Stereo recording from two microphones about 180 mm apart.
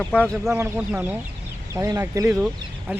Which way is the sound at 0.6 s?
10° right (ahead or behind).